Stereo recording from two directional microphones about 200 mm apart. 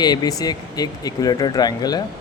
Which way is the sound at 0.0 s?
20° left (ahead or behind).